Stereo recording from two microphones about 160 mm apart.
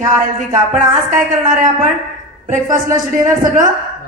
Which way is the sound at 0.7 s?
55° right (ahead or behind).